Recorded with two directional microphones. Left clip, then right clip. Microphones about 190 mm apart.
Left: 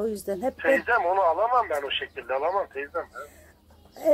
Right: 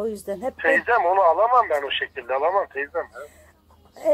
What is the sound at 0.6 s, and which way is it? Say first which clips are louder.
Speech: right 4 dB; 20° right (ahead or behind).